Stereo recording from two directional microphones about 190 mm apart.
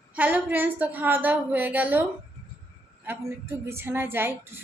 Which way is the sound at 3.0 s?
15° right (ahead or behind).